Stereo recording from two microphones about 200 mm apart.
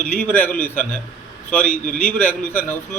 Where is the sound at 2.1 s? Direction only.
10° left (ahead or behind).